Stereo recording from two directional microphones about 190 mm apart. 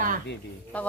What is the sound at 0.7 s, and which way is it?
Speech, 5° left (ahead or behind).